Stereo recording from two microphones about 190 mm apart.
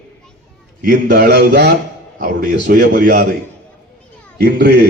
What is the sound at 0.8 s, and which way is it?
A man's voice, 50° right (ahead or behind).